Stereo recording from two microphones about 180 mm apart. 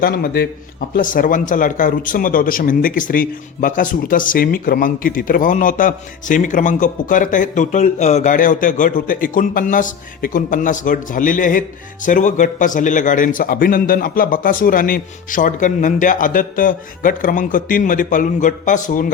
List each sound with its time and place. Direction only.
0.0 s a man's voice: 55° left (ahead or behind)